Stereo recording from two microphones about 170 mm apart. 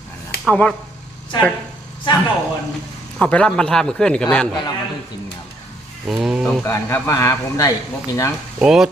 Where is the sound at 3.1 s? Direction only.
5° left (ahead or behind).